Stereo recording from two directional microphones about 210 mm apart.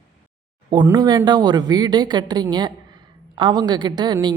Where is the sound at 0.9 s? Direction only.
20° right (ahead or behind).